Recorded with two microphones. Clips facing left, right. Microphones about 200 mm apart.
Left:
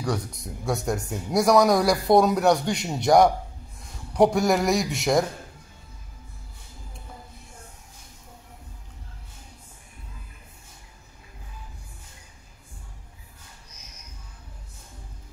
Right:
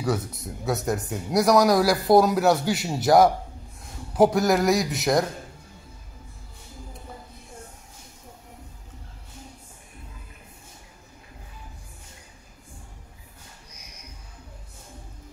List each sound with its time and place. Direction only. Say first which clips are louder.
0.0 s speech: right 2 dB; 5° right (ahead or behind)
13.7 s music: right 2 dB; 10° right (ahead or behind)